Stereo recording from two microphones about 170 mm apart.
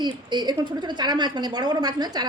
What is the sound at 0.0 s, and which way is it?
A woman's voice, 25° right (ahead or behind).